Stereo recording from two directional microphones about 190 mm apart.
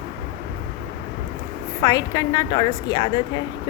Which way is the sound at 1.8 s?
20° left (ahead or behind).